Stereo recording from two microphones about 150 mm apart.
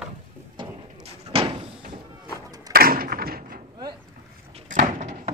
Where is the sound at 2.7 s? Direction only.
80° right.